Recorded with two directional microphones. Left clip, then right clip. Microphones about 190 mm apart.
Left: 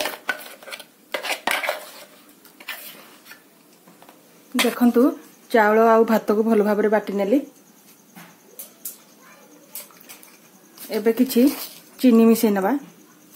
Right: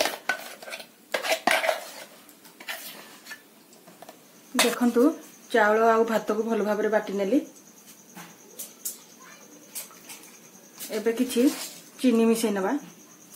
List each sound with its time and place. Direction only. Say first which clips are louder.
0.3 s stir: left 2 dB; centre (ahead or behind)
4.7 s speech: left 4 dB; 35° left (ahead or behind)
10.9 s speech: left 6 dB; 45° left (ahead or behind)